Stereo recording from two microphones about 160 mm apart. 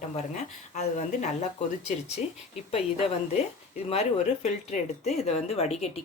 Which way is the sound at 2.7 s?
40° left (ahead or behind).